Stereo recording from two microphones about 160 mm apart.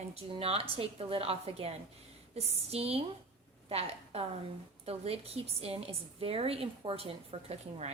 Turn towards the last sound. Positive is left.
turn(degrees=-40)  # may be behind; listen again after turning